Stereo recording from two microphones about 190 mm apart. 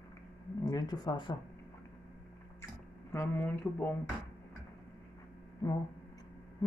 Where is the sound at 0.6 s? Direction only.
20° left (ahead or behind).